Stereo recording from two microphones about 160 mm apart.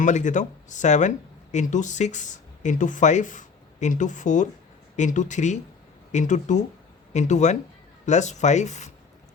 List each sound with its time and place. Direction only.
0.0 s speech: 50° left (ahead or behind)